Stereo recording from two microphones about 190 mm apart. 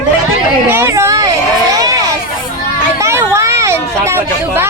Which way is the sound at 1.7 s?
20° right (ahead or behind).